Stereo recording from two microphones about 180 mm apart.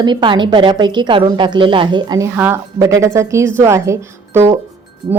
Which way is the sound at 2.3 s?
10° right (ahead or behind).